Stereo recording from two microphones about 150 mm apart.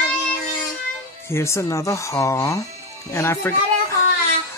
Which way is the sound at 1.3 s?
20° left (ahead or behind).